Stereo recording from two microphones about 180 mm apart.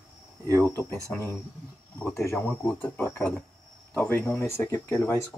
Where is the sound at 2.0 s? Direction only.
15° left (ahead or behind).